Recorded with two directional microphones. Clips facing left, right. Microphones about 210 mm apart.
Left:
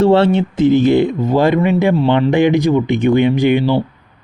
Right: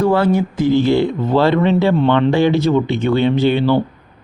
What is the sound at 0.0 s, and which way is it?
Speech, 25° left (ahead or behind).